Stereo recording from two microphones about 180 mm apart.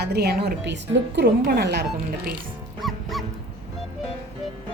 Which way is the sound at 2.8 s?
Centre (ahead or behind).